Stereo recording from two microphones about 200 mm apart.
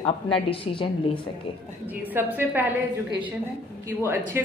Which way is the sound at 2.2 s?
10° right (ahead or behind).